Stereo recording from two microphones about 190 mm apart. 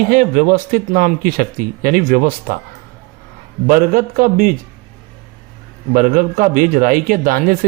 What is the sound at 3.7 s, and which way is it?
Speech, 50° right (ahead or behind).